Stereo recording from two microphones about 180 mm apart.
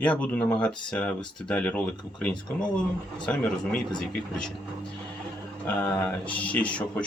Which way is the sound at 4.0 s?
5° left (ahead or behind).